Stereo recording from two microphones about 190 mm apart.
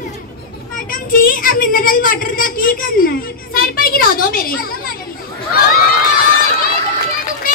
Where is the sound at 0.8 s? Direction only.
45° left (ahead or behind).